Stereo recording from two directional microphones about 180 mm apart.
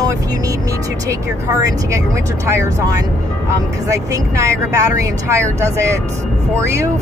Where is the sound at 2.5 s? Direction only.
15° right (ahead or behind).